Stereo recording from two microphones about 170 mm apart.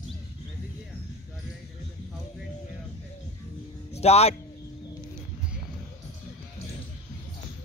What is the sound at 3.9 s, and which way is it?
Speech, 40° left (ahead or behind).